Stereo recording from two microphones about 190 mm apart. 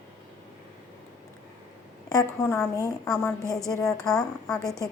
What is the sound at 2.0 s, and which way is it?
A woman's voice, 20° left (ahead or behind).